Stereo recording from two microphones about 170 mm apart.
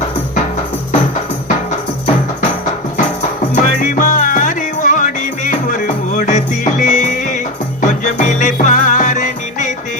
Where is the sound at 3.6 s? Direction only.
50° left (ahead or behind).